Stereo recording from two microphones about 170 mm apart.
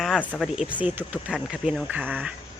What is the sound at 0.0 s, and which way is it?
Speech, 5° left (ahead or behind).